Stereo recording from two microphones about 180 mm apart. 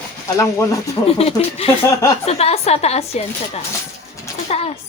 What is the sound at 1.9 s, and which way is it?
Speech, 20° left (ahead or behind).